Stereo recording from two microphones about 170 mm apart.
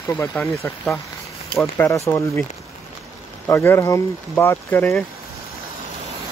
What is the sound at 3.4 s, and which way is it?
Speech, 15° left (ahead or behind).